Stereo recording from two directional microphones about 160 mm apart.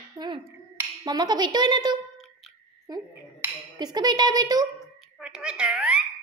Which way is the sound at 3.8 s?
25° right (ahead or behind).